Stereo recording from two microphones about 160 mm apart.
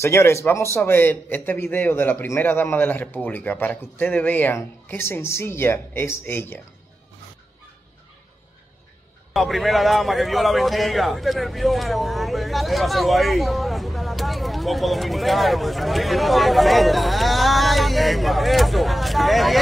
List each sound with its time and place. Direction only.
0.0 s a man's voice: 15° left (ahead or behind)
9.3 s a man's voice: centre (ahead or behind)